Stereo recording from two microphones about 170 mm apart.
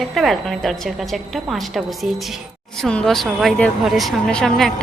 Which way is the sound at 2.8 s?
5° left (ahead or behind).